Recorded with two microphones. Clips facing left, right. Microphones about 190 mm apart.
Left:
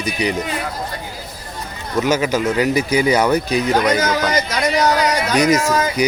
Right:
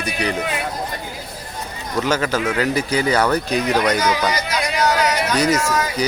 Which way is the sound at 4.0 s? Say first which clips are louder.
Left 2 dB; 50° left (ahead or behind).